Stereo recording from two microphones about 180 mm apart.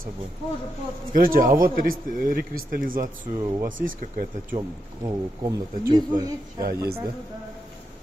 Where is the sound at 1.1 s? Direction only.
50° right (ahead or behind).